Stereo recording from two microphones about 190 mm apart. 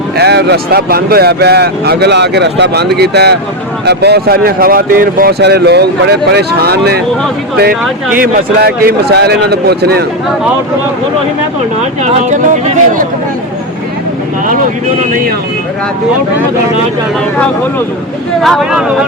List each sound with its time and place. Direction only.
0.2 s speech: 60° right (ahead or behind)
8.2 s speech: 50° right (ahead or behind)
12.0 s speech: 35° right (ahead or behind)
18.4 s speech: centre (ahead or behind)